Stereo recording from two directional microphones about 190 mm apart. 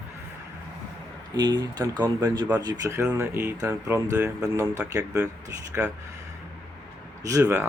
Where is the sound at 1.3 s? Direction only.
20° right (ahead or behind).